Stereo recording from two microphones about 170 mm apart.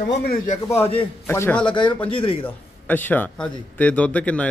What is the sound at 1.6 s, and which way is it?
Speech, 30° left (ahead or behind).